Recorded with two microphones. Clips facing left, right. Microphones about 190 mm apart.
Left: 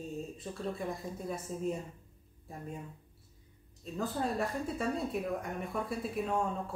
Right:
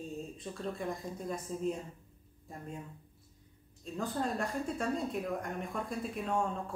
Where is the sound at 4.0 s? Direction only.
5° left (ahead or behind).